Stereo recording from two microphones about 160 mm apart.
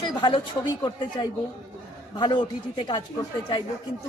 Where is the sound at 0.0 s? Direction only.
30° left (ahead or behind).